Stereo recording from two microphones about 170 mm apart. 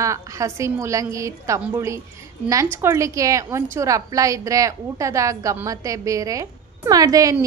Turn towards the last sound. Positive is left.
turn(degrees=-20)  # may be behind; listen again after turning